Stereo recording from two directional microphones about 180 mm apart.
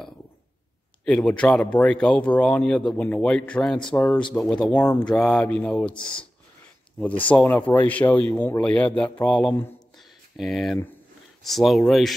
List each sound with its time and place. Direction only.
1.0 s speech: 5° left (ahead or behind)
8.2 s speech: 20° left (ahead or behind)
8.5 s speech: 5° left (ahead or behind)
9.9 s a sound: centre (ahead or behind)
11.4 s speech: centre (ahead or behind)